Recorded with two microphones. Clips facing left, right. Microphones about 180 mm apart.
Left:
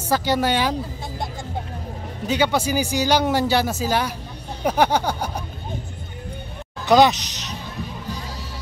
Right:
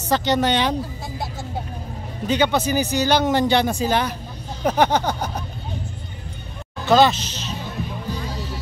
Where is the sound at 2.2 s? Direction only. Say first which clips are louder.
Right 1 dB; 10° left (ahead or behind).